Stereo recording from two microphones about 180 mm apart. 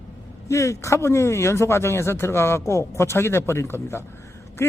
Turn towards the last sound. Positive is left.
turn(degrees=15)  # may be behind; listen again after turning